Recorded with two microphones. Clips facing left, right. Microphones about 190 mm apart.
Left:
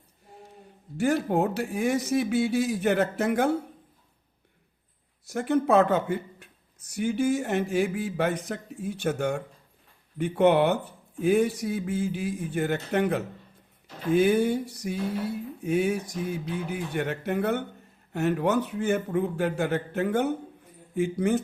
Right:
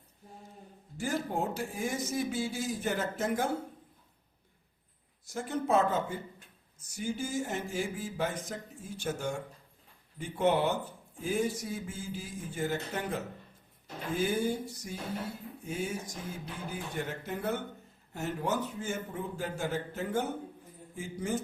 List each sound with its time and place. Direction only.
0.9 s speech: 65° left (ahead or behind)
5.3 s a man's voice: 65° left (ahead or behind)